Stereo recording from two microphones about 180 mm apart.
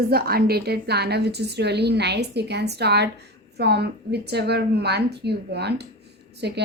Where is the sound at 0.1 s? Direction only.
60° right (ahead or behind).